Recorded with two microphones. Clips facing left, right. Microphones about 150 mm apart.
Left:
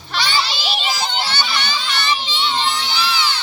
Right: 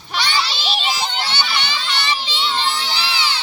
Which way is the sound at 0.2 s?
Centre (ahead or behind).